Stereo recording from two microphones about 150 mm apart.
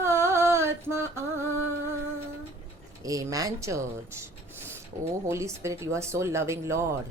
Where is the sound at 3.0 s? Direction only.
25° right (ahead or behind).